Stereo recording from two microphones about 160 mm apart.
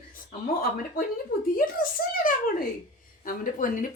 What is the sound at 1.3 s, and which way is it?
Speech, 60° left (ahead or behind).